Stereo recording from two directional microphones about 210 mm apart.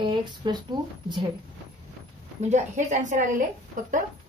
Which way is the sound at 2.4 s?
35° right (ahead or behind).